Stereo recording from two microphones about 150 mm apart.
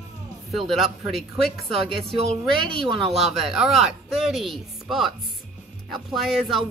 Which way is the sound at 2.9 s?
35° right (ahead or behind).